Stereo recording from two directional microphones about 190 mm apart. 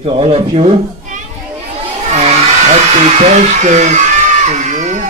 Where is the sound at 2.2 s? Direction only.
35° right (ahead or behind).